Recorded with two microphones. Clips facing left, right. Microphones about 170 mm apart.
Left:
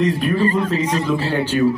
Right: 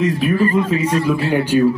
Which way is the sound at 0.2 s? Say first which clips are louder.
Right 2 dB; centre (ahead or behind).